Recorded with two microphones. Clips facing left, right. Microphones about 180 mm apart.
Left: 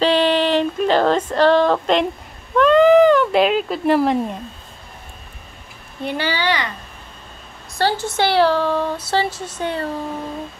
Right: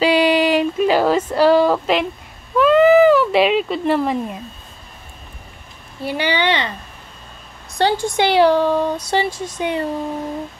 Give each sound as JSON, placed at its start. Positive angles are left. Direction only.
{"t": 0.0, "sound": "a sound", "side_deg": -10}
{"t": 6.0, "sound": "speech", "side_deg": -15}
{"t": 7.7, "sound": "speech", "side_deg": -15}